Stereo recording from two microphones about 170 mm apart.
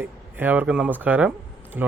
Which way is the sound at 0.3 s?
10° right (ahead or behind).